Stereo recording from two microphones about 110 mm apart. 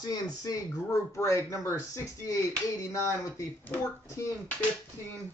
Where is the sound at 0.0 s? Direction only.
35° left (ahead or behind).